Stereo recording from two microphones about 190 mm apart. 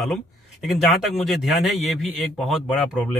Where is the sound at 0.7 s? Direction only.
Centre (ahead or behind).